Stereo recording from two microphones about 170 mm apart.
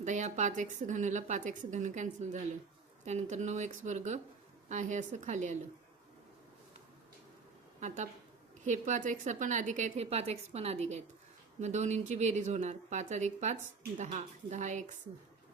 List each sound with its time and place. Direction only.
0.0 s speech: 45° right (ahead or behind)
7.8 s speech: 45° right (ahead or behind)